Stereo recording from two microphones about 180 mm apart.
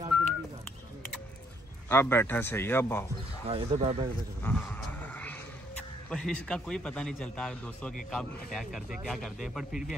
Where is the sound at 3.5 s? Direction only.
35° right (ahead or behind).